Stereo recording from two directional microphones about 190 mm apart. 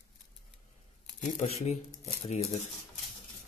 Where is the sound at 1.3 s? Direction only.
30° left (ahead or behind).